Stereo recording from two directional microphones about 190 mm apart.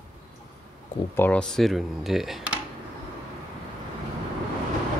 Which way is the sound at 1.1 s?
10° left (ahead or behind).